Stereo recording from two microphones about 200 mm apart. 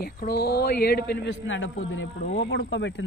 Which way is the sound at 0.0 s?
50° left (ahead or behind).